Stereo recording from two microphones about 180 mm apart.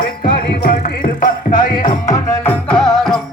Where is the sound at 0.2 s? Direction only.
55° left (ahead or behind).